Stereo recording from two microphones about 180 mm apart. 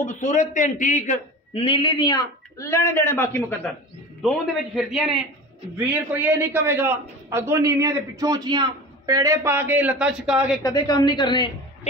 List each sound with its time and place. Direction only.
0.0 s a man's voice: 45° left (ahead or behind); by 3.7 s 10° left (ahead or behind)
4.7 s a man's voice: centre (ahead or behind)
10.6 s a woman's voice: 20° left (ahead or behind)